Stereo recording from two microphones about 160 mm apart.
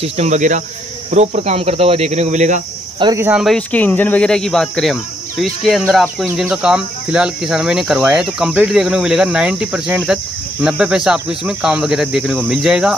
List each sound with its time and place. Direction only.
0.0 s speech: 45° right (ahead or behind)
3.2 s speech: 5° right (ahead or behind)
3.5 s speech: 10° left (ahead or behind)